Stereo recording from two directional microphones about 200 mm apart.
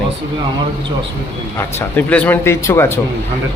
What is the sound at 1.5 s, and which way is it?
Speech, 10° left (ahead or behind).